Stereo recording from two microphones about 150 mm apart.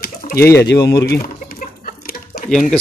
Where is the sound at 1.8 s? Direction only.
75° left (ahead or behind).